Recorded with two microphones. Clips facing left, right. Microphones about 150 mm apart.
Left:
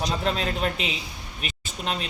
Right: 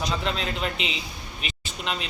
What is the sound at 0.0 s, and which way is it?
Speech, 40° left (ahead or behind).